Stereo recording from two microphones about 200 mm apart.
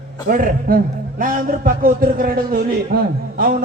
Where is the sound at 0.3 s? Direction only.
45° right (ahead or behind).